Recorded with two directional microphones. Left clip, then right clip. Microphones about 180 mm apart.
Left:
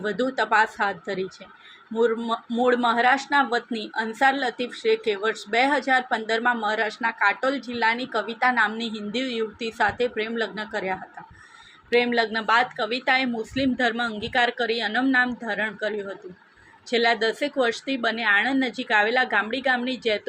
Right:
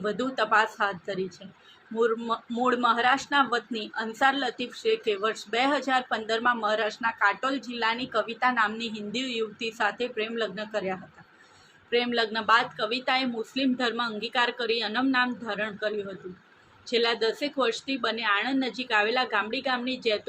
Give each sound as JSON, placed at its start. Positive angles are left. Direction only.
{"t": 0.0, "sound": "speech", "side_deg": 15}